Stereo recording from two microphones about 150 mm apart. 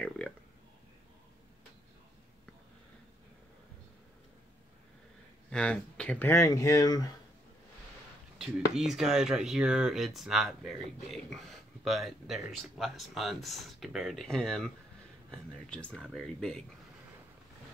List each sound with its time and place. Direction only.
0.2 s a sound: 10° left (ahead or behind)
5.5 s speech: 5° left (ahead or behind); by 7.2 s 25° left (ahead or behind)
8.4 s speech: 5° right (ahead or behind)